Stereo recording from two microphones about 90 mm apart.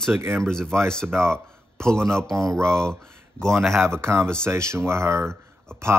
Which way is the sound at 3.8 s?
30° right (ahead or behind).